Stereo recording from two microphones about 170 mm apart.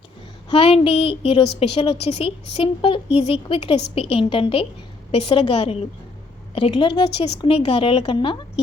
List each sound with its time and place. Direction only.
0.5 s a woman's voice: 35° left (ahead or behind)